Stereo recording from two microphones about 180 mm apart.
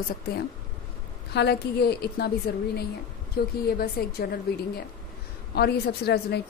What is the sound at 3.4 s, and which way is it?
A woman's voice, 60° left (ahead or behind).